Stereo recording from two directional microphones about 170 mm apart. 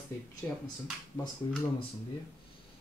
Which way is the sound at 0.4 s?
10° left (ahead or behind).